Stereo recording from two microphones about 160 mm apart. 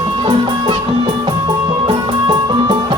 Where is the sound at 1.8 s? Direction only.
30° right (ahead or behind).